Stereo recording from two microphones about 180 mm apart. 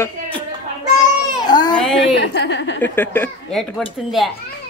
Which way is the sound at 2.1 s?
70° left (ahead or behind).